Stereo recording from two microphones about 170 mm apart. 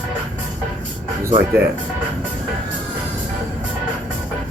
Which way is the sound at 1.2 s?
15° right (ahead or behind).